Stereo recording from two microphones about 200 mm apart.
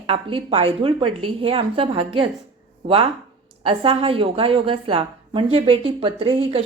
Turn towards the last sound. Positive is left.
turn(degrees=-25)  # may be behind; listen again after turning